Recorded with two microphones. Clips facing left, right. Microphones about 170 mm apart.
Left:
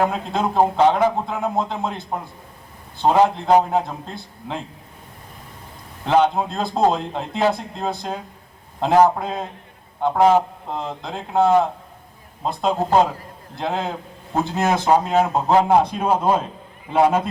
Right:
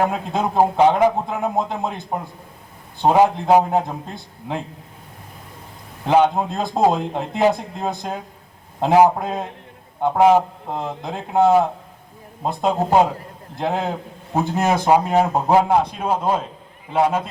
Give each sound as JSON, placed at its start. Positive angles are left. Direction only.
{"t": 0.0, "sound": "a man's voice", "side_deg": -10}
{"t": 6.1, "sound": "a man's voice", "side_deg": -10}
{"t": 16.9, "sound": "a man's voice", "side_deg": -5}